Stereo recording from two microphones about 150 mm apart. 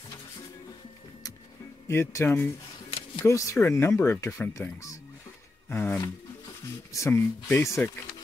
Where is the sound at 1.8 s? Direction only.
20° left (ahead or behind).